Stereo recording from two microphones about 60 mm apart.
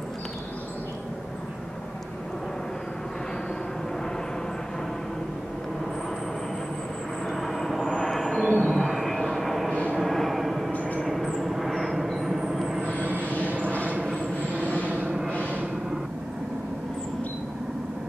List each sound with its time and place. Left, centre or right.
7.2 s vehicle: centre
9.7 s vehicle: centre
9.9 s vehicle: centre
10.7 s train: left
11.1 s a sound: centre
12.8 s vehicle: right
14.4 s vehicle: left
14.9 s a sound: right